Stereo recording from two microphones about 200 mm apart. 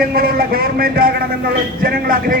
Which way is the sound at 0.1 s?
50° right (ahead or behind).